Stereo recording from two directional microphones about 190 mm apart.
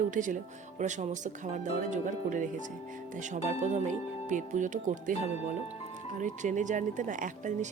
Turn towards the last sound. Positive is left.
turn(degrees=-40)  # may be behind; listen again after turning